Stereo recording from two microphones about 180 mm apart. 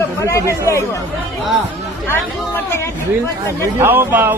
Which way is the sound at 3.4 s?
15° right (ahead or behind).